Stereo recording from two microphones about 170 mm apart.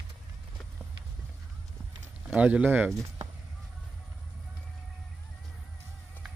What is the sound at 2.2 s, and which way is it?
Speech, 10° right (ahead or behind).